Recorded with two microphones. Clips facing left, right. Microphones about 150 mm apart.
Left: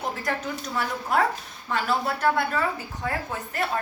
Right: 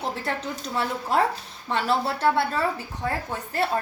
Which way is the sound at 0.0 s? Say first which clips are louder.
Even; 30° right (ahead or behind).